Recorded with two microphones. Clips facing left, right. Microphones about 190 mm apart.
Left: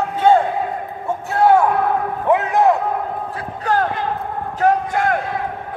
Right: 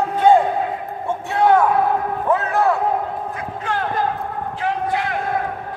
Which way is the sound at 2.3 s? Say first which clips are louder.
Left 4 dB; 15° left (ahead or behind).